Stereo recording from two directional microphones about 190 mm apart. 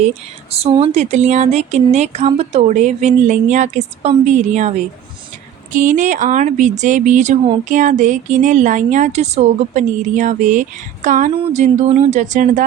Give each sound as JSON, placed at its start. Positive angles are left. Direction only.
{"t": 0.5, "sound": "speech", "side_deg": -30}
{"t": 5.7, "sound": "speech", "side_deg": -40}